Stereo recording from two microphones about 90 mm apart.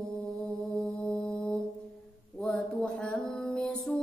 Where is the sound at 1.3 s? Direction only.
15° left (ahead or behind).